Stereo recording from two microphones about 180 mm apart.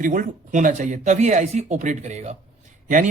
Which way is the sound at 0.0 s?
45° right (ahead or behind).